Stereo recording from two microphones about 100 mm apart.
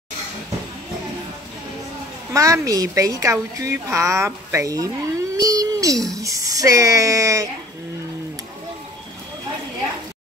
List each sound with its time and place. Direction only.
2.3 s speech: 35° right (ahead or behind)